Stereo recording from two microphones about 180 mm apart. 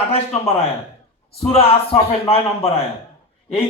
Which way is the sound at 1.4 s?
35° left (ahead or behind).